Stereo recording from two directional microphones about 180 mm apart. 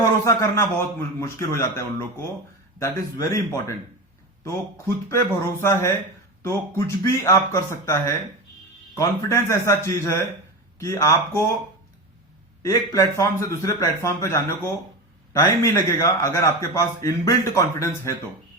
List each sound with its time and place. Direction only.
0.0 s a man's voice: 15° left (ahead or behind)
5.0 s a man's voice: 15° left (ahead or behind)
12.6 s a man's voice: 15° left (ahead or behind)